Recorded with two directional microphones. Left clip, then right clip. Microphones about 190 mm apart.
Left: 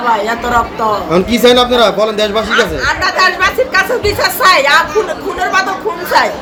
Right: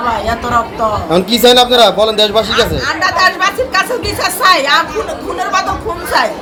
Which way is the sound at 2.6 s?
15° left (ahead or behind).